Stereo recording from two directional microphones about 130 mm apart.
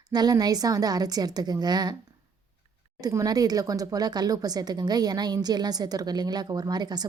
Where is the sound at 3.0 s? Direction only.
30° right (ahead or behind).